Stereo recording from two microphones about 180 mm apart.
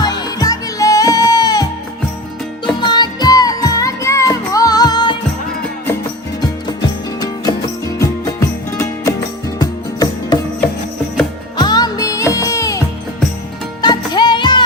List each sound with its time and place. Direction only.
0.0 s music: 20° left (ahead or behind)
2.8 s music: 25° left (ahead or behind)
6.8 s music: 20° left (ahead or behind)
11.5 s music: 25° left (ahead or behind)
13.8 s music: 25° left (ahead or behind)